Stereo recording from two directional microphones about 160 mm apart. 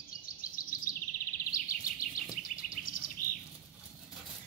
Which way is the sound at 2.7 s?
60° left (ahead or behind).